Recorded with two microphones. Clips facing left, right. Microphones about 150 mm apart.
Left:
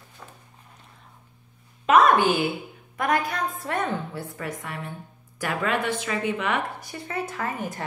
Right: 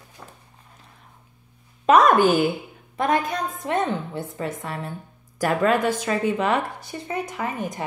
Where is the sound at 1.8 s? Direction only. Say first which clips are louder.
Right 2 dB; 40° right (ahead or behind).